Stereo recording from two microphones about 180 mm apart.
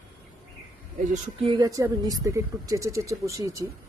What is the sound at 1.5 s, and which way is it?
Speech, 20° right (ahead or behind).